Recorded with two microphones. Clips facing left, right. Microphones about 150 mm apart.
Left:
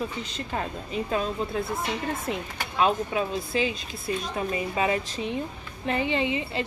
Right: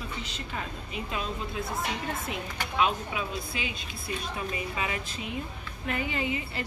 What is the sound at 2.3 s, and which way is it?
Speech, 40° left (ahead or behind).